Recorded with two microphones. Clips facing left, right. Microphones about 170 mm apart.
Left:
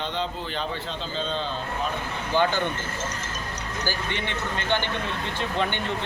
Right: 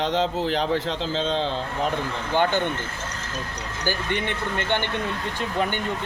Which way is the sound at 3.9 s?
55° right (ahead or behind).